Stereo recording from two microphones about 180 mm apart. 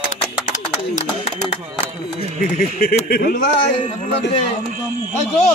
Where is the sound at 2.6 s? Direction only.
55° left (ahead or behind).